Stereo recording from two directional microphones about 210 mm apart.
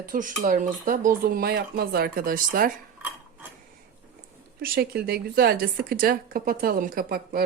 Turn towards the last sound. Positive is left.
turn(degrees=-45)  # may be behind; listen again after turning